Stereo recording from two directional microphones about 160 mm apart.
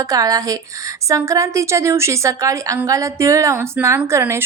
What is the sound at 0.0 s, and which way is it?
A woman's voice, 20° right (ahead or behind).